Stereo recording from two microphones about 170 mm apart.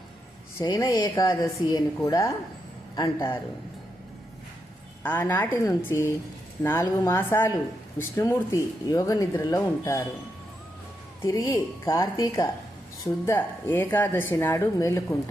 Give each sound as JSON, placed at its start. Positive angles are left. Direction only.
{"t": 0.6, "sound": "a man's voice", "side_deg": 25}
{"t": 5.0, "sound": "speech", "side_deg": 10}
{"t": 11.2, "sound": "speech", "side_deg": 15}